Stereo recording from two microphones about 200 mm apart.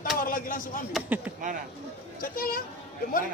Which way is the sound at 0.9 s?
10° right (ahead or behind).